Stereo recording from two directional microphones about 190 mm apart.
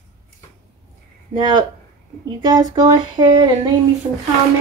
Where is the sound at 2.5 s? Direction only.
20° right (ahead or behind).